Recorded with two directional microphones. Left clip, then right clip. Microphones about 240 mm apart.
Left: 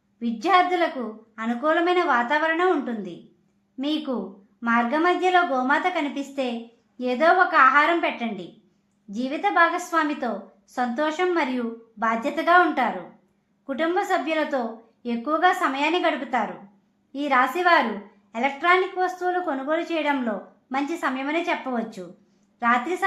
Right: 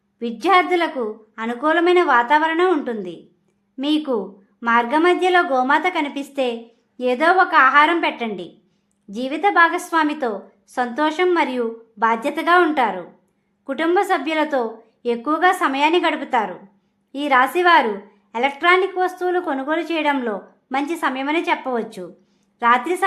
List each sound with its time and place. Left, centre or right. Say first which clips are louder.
0.2 s a woman's voice: right 3 dB; right